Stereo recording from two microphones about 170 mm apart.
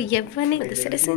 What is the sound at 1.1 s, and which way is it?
Speech, 60° left (ahead or behind).